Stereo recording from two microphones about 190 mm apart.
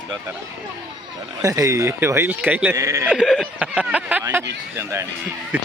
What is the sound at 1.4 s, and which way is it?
Speech, 20° right (ahead or behind).